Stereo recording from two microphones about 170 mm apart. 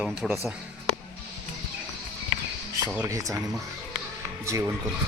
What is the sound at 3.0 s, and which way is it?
Speech, 20° right (ahead or behind).